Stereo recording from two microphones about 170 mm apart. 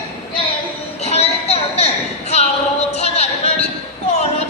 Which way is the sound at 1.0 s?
40° left (ahead or behind).